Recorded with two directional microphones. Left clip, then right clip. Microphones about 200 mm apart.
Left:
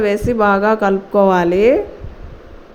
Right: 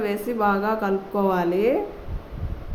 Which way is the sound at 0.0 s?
30° left (ahead or behind).